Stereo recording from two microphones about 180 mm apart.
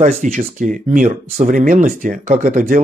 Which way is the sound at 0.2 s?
45° right (ahead or behind).